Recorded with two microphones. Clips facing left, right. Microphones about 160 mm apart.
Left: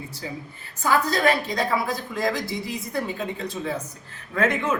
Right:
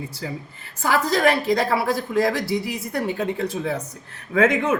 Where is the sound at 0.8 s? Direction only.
85° right.